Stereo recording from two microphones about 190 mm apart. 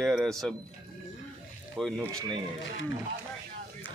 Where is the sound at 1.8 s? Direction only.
5° left (ahead or behind).